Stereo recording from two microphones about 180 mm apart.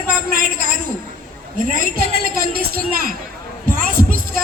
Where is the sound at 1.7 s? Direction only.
55° right (ahead or behind).